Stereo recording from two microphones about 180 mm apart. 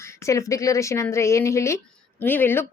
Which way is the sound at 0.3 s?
15° left (ahead or behind).